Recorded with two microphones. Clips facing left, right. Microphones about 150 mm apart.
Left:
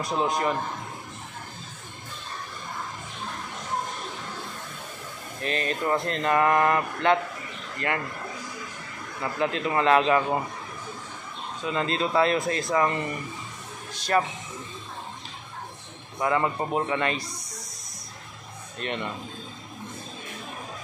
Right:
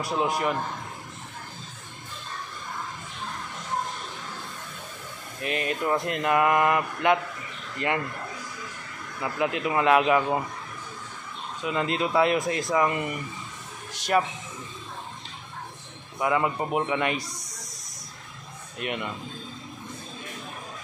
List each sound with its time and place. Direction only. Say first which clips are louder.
0.0 s speech: even; 10° right (ahead or behind)
5.4 s speech: even; 10° right (ahead or behind)
9.2 s speech: even; 15° right (ahead or behind)
11.6 s speech: even; 15° right (ahead or behind)
16.2 s speech: even; 10° right (ahead or behind)
18.8 s speech: even; 10° right (ahead or behind)